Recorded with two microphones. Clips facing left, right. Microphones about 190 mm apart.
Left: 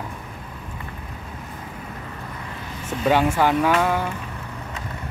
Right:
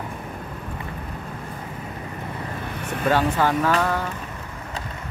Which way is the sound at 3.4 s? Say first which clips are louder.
Left 2 dB; 15° left (ahead or behind).